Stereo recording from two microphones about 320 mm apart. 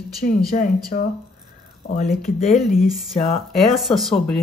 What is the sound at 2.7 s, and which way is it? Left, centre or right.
Speech, centre.